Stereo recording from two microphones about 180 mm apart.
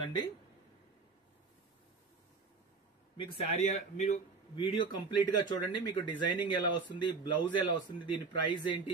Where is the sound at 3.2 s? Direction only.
35° left (ahead or behind).